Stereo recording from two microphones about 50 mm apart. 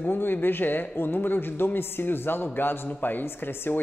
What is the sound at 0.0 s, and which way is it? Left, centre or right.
Speech, left.